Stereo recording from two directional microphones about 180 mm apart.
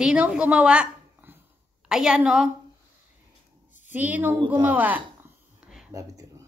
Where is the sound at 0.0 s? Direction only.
5° right (ahead or behind).